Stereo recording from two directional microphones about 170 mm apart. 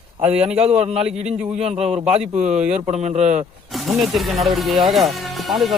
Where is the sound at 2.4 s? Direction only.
40° right (ahead or behind).